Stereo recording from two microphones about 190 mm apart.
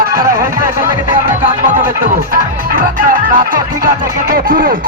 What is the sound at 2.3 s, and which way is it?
Music, 45° right (ahead or behind).